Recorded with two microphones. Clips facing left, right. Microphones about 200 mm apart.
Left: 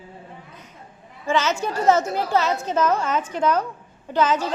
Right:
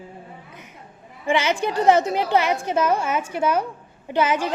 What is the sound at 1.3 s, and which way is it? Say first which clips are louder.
A woman's voice: right 1 dB; 15° right (ahead or behind).